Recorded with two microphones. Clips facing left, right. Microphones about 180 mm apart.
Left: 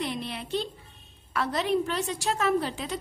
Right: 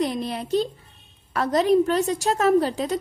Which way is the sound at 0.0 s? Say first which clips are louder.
Right 7 dB; 40° right (ahead or behind).